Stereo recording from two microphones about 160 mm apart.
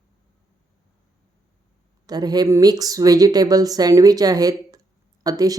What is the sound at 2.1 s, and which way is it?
Speech, 25° right (ahead or behind).